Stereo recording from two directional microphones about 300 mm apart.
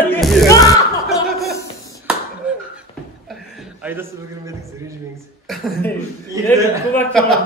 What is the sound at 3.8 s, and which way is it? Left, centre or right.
Speech, centre.